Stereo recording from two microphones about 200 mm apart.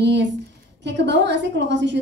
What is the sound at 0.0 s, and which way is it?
A woman's voice, 60° right (ahead or behind).